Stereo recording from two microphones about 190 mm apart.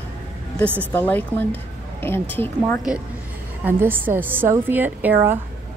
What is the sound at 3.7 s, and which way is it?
A woman's voice, 10° right (ahead or behind).